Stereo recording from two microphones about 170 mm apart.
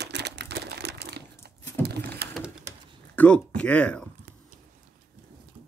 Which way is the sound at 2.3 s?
5° right (ahead or behind).